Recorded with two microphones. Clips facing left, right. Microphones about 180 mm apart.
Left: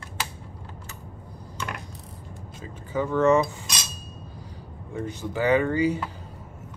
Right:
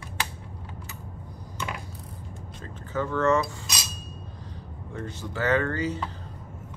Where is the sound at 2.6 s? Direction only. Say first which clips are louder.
Left 2 dB; 15° left (ahead or behind).